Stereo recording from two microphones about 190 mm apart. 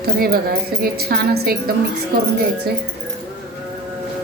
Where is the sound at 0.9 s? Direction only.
55° right (ahead or behind).